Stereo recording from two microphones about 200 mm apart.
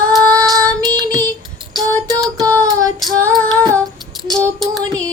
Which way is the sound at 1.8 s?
20° right (ahead or behind).